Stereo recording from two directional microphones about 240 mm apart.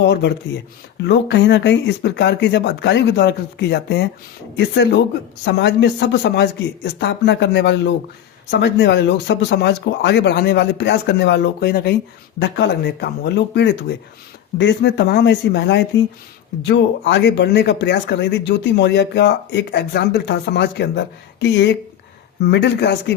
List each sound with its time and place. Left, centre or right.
0.0 s speech: left